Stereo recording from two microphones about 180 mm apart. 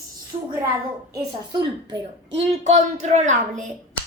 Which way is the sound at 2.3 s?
40° right (ahead or behind).